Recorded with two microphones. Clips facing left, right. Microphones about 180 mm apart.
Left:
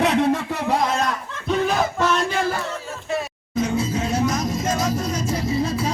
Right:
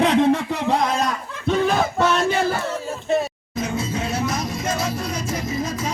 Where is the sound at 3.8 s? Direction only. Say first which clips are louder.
Left 2 dB; 35° left (ahead or behind).